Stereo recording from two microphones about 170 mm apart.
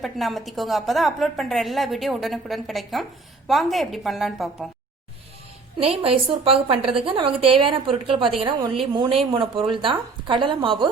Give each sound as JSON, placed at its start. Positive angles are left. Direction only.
{"t": 0.0, "sound": "a woman's voice", "side_deg": 0}
{"t": 5.8, "sound": "speech", "side_deg": -35}